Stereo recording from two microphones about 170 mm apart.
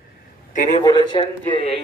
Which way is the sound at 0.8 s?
25° left (ahead or behind).